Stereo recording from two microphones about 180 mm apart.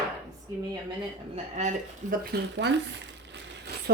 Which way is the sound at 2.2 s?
65° right (ahead or behind).